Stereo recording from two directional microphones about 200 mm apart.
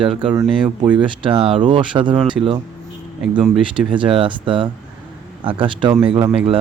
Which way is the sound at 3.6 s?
25° right (ahead or behind).